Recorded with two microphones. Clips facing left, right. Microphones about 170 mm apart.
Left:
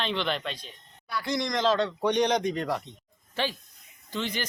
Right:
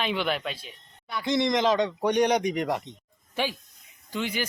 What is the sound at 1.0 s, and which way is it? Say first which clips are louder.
Speech: right 5 dB; 20° right (ahead or behind).